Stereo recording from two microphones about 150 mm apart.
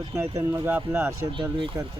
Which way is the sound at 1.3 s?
35° right (ahead or behind).